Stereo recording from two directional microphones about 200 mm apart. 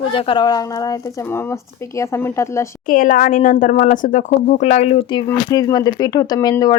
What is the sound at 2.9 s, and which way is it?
Speech, 45° left (ahead or behind).